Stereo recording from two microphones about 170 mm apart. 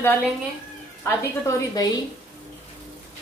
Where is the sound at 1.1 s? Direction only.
20° left (ahead or behind).